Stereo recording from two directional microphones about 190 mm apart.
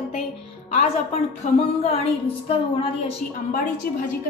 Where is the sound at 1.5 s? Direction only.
35° left (ahead or behind).